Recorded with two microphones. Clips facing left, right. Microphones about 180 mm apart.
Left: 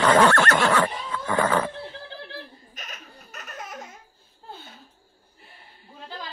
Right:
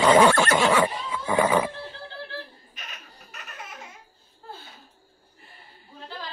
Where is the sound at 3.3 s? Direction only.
45° left (ahead or behind).